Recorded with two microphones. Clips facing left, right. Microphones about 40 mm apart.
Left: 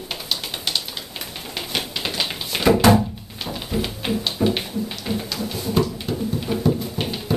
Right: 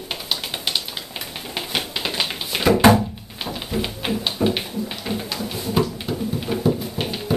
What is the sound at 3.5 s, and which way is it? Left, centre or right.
Music, centre.